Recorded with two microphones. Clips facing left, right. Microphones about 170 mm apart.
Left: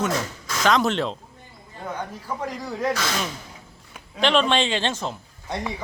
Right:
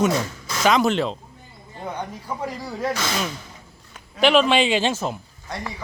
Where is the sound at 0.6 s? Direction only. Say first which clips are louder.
Right 2 dB; 5° right (ahead or behind).